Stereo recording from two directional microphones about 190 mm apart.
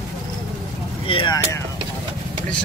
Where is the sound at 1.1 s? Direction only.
25° left (ahead or behind).